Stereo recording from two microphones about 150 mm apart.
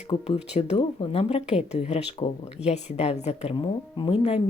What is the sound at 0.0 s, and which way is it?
Speech, 40° left (ahead or behind).